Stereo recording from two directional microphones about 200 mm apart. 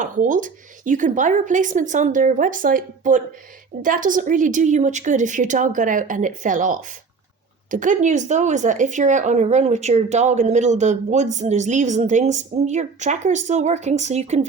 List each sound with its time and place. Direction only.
0.0 s speech: 40° right (ahead or behind)